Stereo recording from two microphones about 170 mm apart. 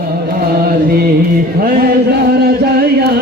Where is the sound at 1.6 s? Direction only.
65° right (ahead or behind).